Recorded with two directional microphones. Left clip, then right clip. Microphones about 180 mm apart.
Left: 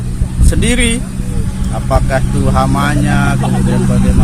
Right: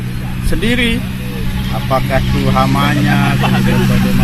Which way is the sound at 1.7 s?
10° left (ahead or behind).